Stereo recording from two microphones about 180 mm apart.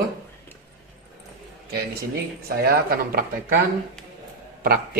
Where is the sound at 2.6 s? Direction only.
55° right (ahead or behind).